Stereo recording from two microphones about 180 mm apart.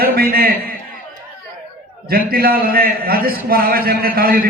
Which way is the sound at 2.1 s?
55° right (ahead or behind).